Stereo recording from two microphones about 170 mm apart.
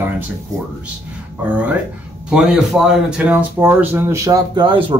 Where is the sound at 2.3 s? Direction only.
5° right (ahead or behind).